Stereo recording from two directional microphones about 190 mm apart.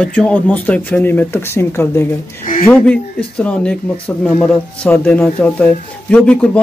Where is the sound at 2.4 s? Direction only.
35° left (ahead or behind).